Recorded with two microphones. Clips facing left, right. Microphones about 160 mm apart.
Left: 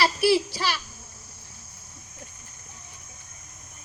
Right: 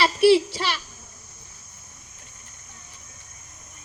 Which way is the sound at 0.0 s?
25° right (ahead or behind).